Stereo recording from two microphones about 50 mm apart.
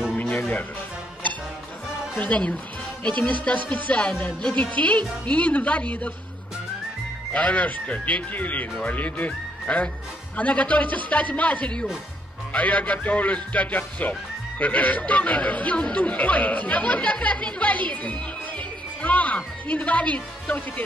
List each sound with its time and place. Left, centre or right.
0.1 s music: left
2.1 s speech: left
7.3 s music: left
10.3 s speech: left
12.5 s music: left
17.6 s speech: left